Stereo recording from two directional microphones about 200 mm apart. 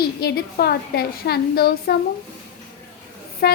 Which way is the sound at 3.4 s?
50° left (ahead or behind).